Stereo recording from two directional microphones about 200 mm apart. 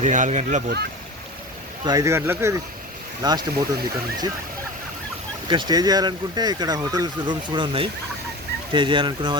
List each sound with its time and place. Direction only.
0.0 s speech: 40° right (ahead or behind)
1.8 s speech: 20° right (ahead or behind)
5.5 s speech: 20° right (ahead or behind)